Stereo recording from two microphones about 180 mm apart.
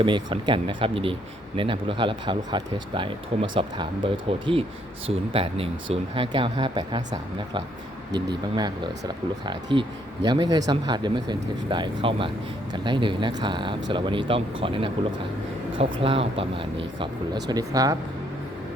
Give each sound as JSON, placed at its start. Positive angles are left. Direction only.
{"t": 0.0, "sound": "speech", "side_deg": -25}
{"t": 8.1, "sound": "speech", "side_deg": -25}
{"t": 16.0, "sound": "speech", "side_deg": -30}
{"t": 17.5, "sound": "speech", "side_deg": -20}